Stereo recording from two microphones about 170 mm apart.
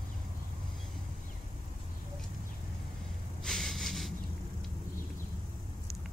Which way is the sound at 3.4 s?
Centre (ahead or behind).